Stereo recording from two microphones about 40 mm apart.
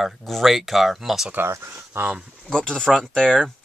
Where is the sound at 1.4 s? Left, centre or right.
Right.